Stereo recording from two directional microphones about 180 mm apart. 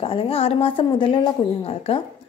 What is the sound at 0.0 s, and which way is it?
Speech, 30° left (ahead or behind).